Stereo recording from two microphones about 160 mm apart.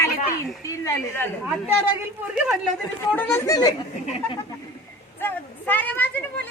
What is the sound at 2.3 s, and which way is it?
Speech, 5° right (ahead or behind).